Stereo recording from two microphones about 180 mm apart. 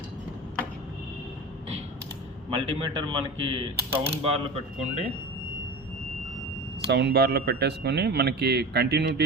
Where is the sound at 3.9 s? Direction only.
30° right (ahead or behind).